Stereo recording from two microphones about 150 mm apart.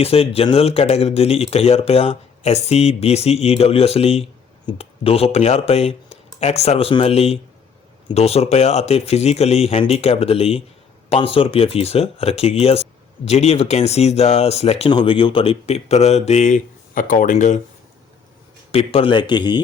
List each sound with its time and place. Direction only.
0.0 s speech: 40° left (ahead or behind)
18.7 s speech: 40° left (ahead or behind)